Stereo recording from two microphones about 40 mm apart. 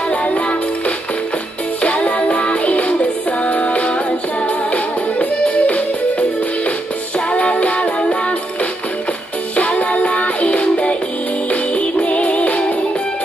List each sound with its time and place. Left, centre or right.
0.1 s music: left
5.2 s music: left
7.2 s music: left
9.6 s music: left